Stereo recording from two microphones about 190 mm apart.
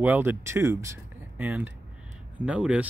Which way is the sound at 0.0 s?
10° right (ahead or behind).